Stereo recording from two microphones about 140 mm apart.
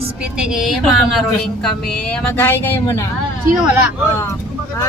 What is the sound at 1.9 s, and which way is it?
Speech, 5° left (ahead or behind).